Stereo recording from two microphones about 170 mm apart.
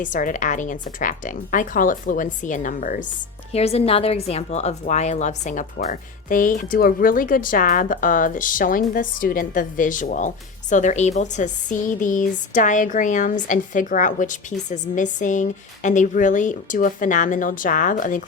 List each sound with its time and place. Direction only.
0.0 s a woman's voice: 50° left (ahead or behind)
3.5 s a woman's voice: 35° left (ahead or behind)